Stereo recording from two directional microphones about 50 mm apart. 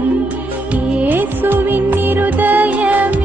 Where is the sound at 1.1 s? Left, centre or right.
Right.